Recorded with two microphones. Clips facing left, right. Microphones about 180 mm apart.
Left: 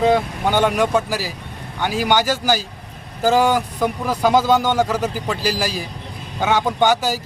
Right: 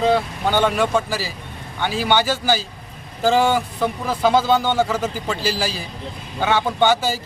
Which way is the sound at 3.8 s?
15° left (ahead or behind).